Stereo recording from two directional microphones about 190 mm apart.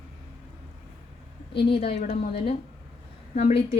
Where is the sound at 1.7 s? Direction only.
30° left (ahead or behind).